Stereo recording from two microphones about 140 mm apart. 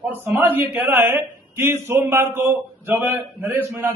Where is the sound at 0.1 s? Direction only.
15° right (ahead or behind).